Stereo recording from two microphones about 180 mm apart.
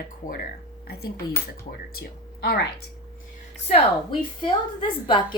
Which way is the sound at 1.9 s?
60° left (ahead or behind).